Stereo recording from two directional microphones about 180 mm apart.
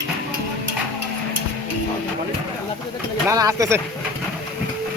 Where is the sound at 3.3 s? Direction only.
20° right (ahead or behind).